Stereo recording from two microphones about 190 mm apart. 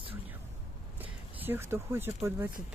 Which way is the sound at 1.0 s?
10° right (ahead or behind).